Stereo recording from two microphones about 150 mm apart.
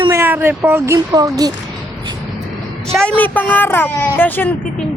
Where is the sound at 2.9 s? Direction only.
5° left (ahead or behind).